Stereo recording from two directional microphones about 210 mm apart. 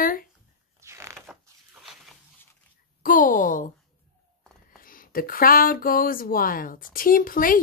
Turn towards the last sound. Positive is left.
turn(degrees=40)  # may be behind; listen again after turning